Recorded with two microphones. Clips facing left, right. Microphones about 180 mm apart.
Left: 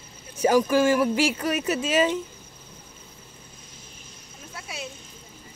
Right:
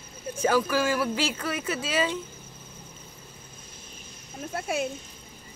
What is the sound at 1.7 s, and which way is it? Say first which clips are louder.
Speech: left 5 dB; 45° left (ahead or behind).